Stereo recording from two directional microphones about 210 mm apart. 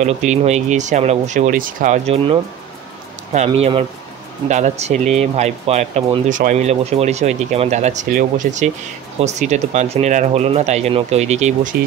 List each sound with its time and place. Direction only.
0.0 s speech: 35° right (ahead or behind)